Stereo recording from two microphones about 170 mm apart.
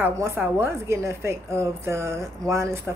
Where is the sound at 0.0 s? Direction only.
15° right (ahead or behind).